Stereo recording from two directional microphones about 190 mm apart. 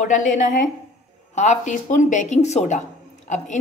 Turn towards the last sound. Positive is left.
turn(degrees=40)  # may be behind; listen again after turning